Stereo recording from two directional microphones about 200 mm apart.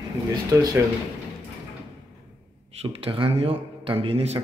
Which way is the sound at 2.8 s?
25° right (ahead or behind).